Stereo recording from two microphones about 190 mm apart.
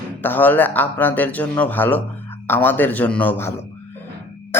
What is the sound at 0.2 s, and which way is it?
Speech, 10° left (ahead or behind).